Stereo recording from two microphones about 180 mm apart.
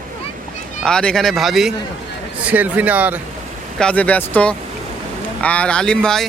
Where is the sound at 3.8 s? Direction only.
5° left (ahead or behind).